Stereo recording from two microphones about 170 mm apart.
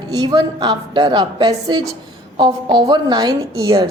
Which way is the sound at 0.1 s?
25° right (ahead or behind).